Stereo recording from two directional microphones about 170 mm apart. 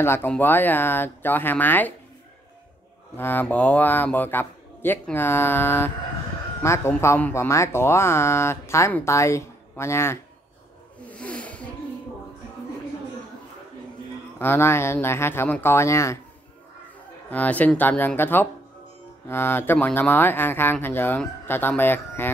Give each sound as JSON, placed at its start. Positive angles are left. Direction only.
{"t": 0.0, "sound": "speech", "side_deg": 15}
{"t": 3.2, "sound": "speech", "side_deg": 10}
{"t": 11.1, "sound": "snake", "side_deg": 5}
{"t": 14.4, "sound": "speech", "side_deg": 15}
{"t": 17.3, "sound": "speech", "side_deg": 10}